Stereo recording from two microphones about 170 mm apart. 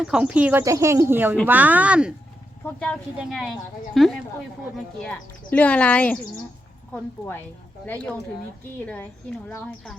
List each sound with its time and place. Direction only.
0.0 s speech: 5° right (ahead or behind)
0.6 s speech: 15° right (ahead or behind)
2.6 s speech: 5° left (ahead or behind)